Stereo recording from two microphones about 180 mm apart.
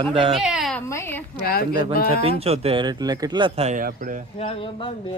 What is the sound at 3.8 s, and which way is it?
Speech, 50° right (ahead or behind).